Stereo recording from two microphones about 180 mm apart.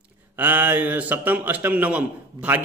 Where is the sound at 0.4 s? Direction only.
10° right (ahead or behind).